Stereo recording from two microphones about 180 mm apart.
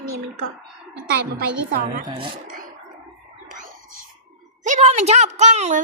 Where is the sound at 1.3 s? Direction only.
55° right (ahead or behind).